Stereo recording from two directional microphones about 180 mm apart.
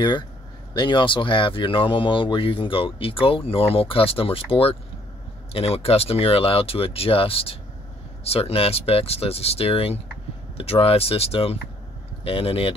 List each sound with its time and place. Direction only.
0.7 s speech: 25° left (ahead or behind)